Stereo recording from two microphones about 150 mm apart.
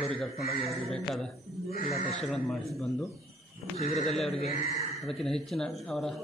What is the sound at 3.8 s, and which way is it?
Speech, 45° left (ahead or behind).